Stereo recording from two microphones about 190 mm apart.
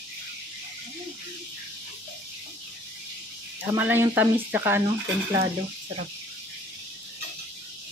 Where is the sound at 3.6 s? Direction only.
10° right (ahead or behind).